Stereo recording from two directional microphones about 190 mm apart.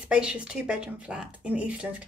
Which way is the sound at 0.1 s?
5° right (ahead or behind).